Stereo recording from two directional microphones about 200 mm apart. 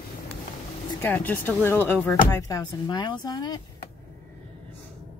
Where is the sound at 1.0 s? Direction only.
10° left (ahead or behind).